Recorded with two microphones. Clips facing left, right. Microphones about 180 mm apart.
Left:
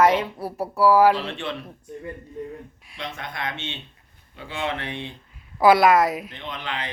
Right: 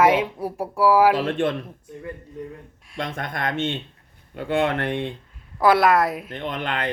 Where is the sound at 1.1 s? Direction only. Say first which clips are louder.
Right 7 dB; 50° right (ahead or behind).